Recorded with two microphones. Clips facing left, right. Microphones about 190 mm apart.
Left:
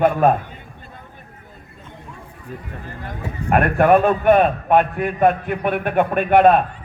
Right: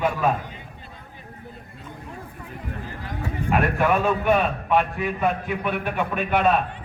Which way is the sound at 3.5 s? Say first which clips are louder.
Left 7 dB; 55° left (ahead or behind).